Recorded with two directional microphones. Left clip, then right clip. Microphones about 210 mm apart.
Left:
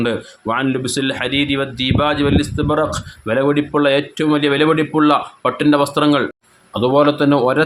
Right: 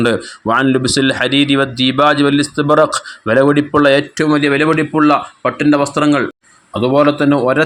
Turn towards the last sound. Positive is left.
turn(degrees=-10)  # may be behind; listen again after turning